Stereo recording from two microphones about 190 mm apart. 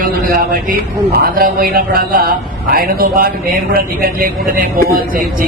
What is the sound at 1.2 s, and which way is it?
Speech, 50° right (ahead or behind).